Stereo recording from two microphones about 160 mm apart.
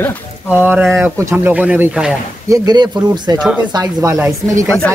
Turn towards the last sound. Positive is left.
turn(degrees=5)  # may be behind; listen again after turning